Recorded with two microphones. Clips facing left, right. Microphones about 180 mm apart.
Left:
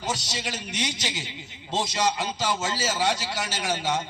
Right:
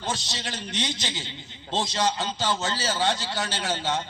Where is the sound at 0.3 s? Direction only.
10° left (ahead or behind).